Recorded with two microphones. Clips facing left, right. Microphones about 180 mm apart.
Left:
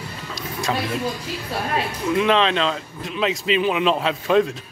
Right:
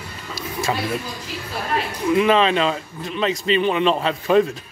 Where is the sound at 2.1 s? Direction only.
5° right (ahead or behind).